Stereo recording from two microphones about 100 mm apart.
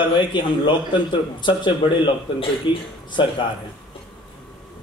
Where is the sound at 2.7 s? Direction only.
50° left (ahead or behind).